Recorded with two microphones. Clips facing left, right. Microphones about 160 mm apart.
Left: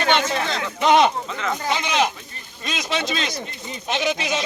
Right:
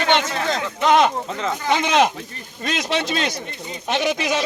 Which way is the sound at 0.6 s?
Centre (ahead or behind).